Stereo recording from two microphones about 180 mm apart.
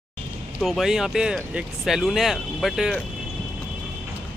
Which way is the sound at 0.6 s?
Centre (ahead or behind).